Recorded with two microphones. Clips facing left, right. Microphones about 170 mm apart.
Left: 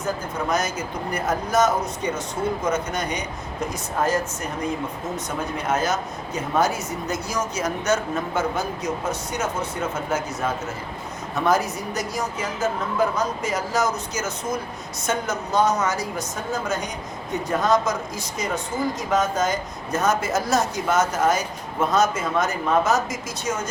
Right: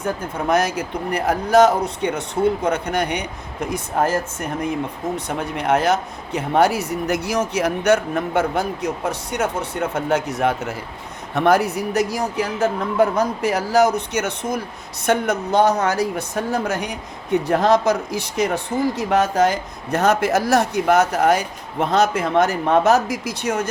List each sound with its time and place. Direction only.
0.5 s speech: 60° right (ahead or behind)